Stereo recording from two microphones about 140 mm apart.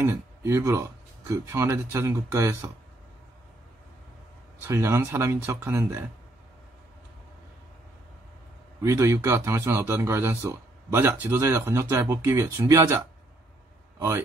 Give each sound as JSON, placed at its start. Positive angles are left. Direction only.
{"t": 0.0, "sound": "speech", "side_deg": -15}
{"t": 4.6, "sound": "speech", "side_deg": -20}
{"t": 8.8, "sound": "speech", "side_deg": -20}